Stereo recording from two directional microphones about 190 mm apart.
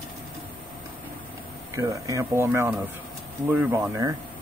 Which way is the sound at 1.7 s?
15° right (ahead or behind).